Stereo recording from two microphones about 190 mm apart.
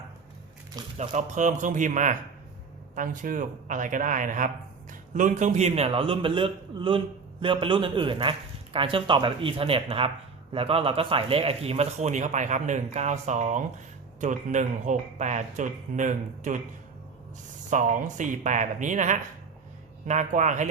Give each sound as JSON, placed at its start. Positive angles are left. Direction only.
{"t": 0.9, "sound": "speech", "side_deg": -40}
{"t": 17.7, "sound": "speech", "side_deg": -40}